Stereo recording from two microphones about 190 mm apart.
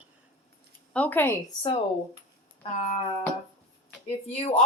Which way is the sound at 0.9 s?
10° left (ahead or behind).